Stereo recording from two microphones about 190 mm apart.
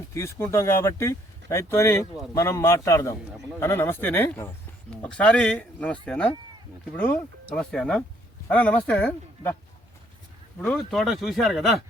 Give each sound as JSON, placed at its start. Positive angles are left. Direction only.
{"t": 0.1, "sound": "speech", "side_deg": 15}
{"t": 7.5, "sound": "speech", "side_deg": 5}
{"t": 10.6, "sound": "speech", "side_deg": 5}